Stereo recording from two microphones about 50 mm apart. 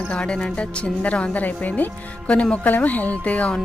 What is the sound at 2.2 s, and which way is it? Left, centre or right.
Speech, left.